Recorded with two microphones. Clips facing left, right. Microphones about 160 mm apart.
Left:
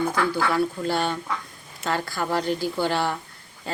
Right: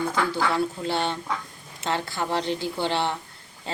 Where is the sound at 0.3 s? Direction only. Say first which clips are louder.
Left 1 dB; 25° right (ahead or behind).